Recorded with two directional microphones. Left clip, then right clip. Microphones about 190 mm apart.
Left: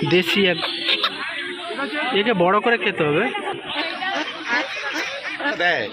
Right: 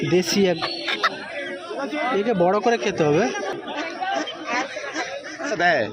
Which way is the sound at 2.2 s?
5° right (ahead or behind).